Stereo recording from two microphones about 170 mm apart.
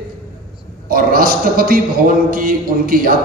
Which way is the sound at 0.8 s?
60° right (ahead or behind).